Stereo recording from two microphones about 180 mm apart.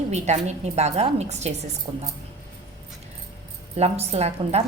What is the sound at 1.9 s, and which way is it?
Speech, 25° right (ahead or behind).